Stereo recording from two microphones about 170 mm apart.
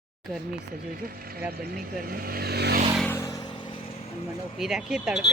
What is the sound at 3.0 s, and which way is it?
Vehicle, 15° left (ahead or behind).